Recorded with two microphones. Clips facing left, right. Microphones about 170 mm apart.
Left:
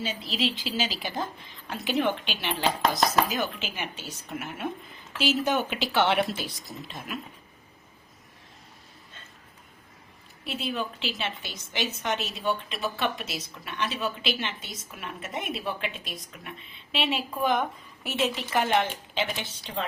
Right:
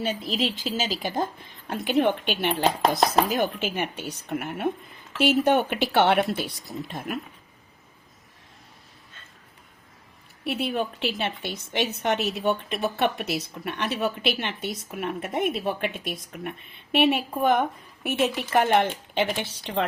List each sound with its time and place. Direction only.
0.0 s a woman's voice: 55° right (ahead or behind)
10.4 s a woman's voice: 60° right (ahead or behind)
19.7 s a woman's voice: 70° right (ahead or behind)